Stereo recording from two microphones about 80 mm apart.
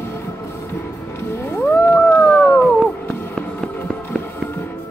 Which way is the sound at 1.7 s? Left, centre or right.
Left.